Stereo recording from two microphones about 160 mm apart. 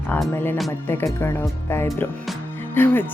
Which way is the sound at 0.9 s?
15° left (ahead or behind).